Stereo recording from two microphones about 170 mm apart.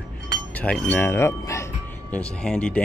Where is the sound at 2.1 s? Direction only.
5° left (ahead or behind).